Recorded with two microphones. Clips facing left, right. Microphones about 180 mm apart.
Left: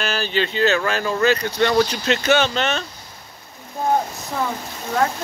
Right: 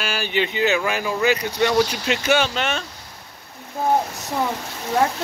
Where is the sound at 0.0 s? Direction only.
10° right (ahead or behind).